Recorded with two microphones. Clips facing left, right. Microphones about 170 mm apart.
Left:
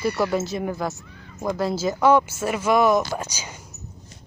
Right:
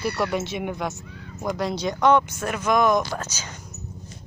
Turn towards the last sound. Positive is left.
turn(degrees=10)  # may be behind; listen again after turning